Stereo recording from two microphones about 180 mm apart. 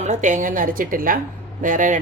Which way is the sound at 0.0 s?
40° right (ahead or behind).